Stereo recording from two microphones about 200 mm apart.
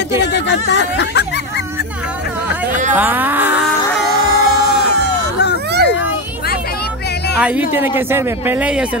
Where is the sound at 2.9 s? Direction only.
10° right (ahead or behind).